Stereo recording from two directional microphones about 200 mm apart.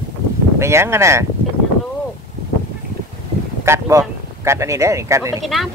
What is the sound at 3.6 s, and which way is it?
Speech, 15° right (ahead or behind).